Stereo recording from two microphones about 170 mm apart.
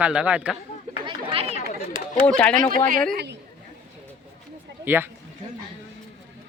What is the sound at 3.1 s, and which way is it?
Speech, 75° right (ahead or behind).